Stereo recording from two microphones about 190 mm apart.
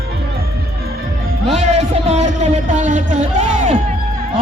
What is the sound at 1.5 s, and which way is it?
Speech, 35° right (ahead or behind).